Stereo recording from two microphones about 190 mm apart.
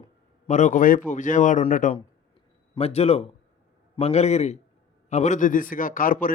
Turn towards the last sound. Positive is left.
turn(degrees=45)  # may be behind; listen again after turning